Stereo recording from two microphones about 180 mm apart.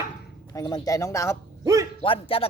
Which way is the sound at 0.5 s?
20° left (ahead or behind).